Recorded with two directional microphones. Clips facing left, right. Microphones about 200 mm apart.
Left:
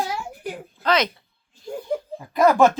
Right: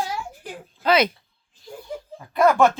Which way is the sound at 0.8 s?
10° right (ahead or behind).